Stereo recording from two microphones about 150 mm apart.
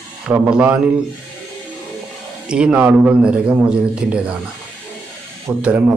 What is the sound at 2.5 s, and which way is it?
Speech, 5° right (ahead or behind).